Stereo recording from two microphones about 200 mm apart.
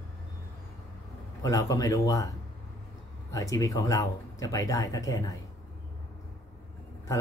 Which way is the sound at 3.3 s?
15° left (ahead or behind).